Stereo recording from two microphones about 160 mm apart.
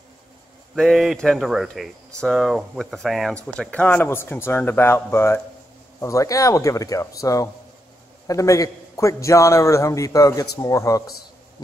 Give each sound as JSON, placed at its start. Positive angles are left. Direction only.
{"t": 0.7, "sound": "a man's voice", "side_deg": 0}